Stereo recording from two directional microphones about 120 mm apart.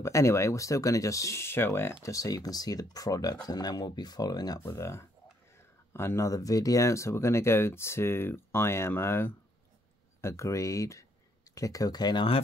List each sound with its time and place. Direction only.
0.0 s speech: 25° left (ahead or behind); by 12.4 s 40° left (ahead or behind)